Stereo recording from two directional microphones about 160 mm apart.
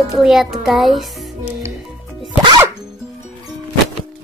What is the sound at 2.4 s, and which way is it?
Music, 30° right (ahead or behind).